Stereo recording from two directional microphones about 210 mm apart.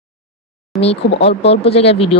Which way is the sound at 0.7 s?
Centre (ahead or behind).